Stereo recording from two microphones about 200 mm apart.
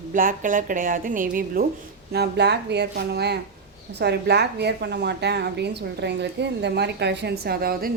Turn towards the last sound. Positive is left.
turn(degrees=-45)  # may be behind; listen again after turning